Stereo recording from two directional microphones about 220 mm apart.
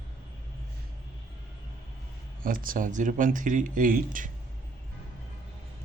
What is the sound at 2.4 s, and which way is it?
Speech, 40° right (ahead or behind).